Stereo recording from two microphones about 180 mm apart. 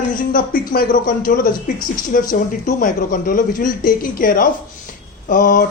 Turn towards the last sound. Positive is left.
turn(degrees=50)  # may be behind; listen again after turning